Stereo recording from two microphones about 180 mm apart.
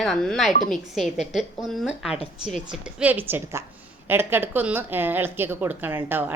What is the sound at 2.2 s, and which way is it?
Speech, 40° left (ahead or behind).